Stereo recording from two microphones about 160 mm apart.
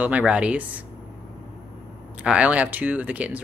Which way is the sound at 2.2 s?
5° right (ahead or behind).